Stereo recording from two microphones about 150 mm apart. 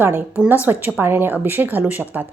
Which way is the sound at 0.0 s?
15° right (ahead or behind).